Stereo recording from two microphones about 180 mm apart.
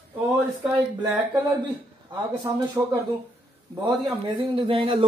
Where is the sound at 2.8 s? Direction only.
15° right (ahead or behind).